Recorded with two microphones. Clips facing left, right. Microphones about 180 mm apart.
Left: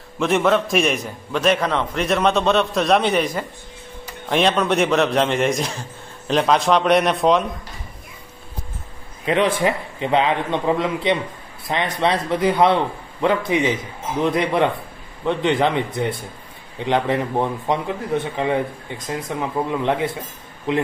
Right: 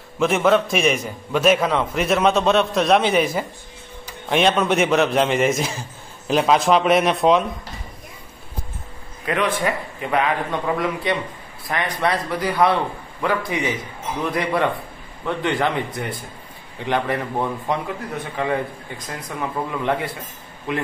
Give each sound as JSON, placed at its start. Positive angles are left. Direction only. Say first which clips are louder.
{"t": 0.2, "sound": "a man's voice", "louder": "right 1 dB", "side_deg": 0}
{"t": 9.2, "sound": "a man's voice", "louder": "left 3 dB", "side_deg": 30}